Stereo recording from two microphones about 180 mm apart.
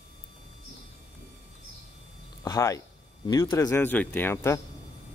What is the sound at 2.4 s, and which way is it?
Speech, 20° left (ahead or behind).